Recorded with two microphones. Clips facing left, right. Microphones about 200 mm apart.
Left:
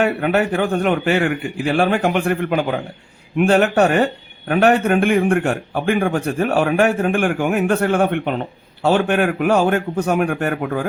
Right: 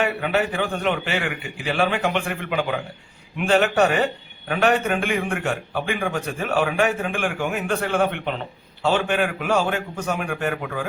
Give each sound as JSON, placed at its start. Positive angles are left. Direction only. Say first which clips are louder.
{"t": 0.0, "sound": "a man's voice", "louder": "left 5 dB", "side_deg": 55}